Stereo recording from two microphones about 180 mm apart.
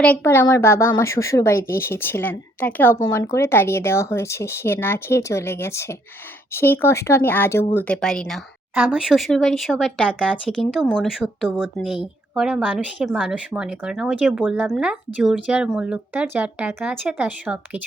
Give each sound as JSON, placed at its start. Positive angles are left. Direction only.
{"t": 0.0, "sound": "speech", "side_deg": 10}
{"t": 8.7, "sound": "speech", "side_deg": -5}